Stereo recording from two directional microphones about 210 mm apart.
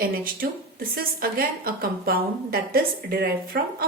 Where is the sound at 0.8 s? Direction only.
45° right (ahead or behind).